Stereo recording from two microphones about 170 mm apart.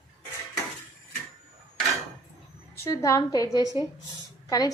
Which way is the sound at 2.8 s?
15° left (ahead or behind).